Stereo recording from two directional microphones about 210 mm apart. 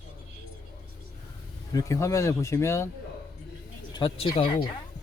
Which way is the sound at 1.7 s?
15° left (ahead or behind).